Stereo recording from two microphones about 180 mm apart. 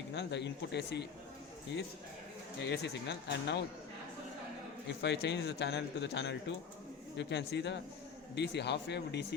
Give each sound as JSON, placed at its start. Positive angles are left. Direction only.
{"t": 0.1, "sound": "a man's voice", "side_deg": 75}
{"t": 2.6, "sound": "a man's voice", "side_deg": 70}
{"t": 4.9, "sound": "a man's voice", "side_deg": 75}